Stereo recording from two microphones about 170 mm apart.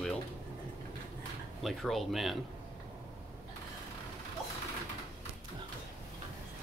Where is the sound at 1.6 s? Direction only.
Centre (ahead or behind).